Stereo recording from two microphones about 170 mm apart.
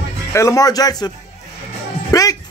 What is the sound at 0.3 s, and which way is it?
Speech, 20° left (ahead or behind).